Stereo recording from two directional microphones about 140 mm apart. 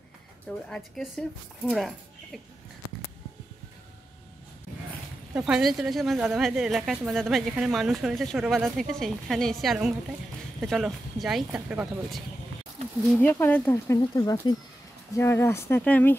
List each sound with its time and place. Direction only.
0.7 s speech: 5° left (ahead or behind)
5.3 s speech: 5° right (ahead or behind)
13.2 s speech: 15° left (ahead or behind)
14.1 s speech: 25° left (ahead or behind)